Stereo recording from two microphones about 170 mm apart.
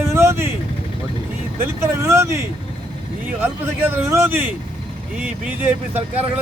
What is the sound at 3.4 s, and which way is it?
Speech, 15° right (ahead or behind).